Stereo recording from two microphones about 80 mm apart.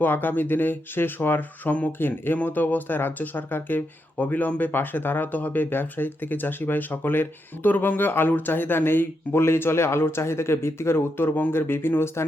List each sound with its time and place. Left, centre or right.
0.0 s speech: left